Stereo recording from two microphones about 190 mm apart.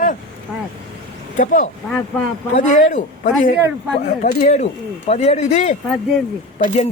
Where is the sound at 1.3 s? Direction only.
40° left (ahead or behind).